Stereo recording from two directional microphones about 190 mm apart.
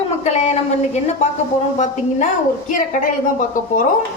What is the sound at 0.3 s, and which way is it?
A woman's voice, 35° left (ahead or behind).